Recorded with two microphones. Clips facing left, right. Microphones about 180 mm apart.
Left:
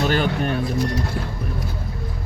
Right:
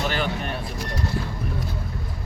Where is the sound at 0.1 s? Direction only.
45° left (ahead or behind).